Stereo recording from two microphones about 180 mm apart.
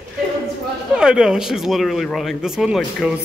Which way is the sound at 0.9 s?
5° right (ahead or behind).